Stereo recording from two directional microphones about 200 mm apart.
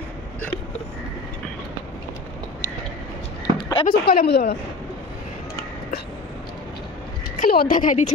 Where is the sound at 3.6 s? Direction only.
20° left (ahead or behind).